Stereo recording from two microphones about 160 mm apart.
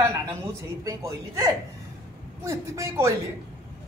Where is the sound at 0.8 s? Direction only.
20° right (ahead or behind).